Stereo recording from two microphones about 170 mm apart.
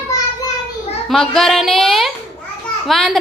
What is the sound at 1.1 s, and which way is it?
A woman's voice, centre (ahead or behind).